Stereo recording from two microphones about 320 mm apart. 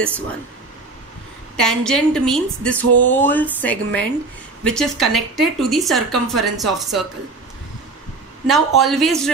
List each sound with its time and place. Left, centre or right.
1.6 s speech: centre
2.8 s a sound: right
3.1 s speech: centre
8.5 s speech: centre